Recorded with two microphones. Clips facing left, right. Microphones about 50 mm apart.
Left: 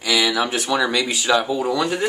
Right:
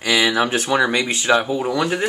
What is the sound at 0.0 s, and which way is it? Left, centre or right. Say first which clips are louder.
Speech: right 2 dB; right.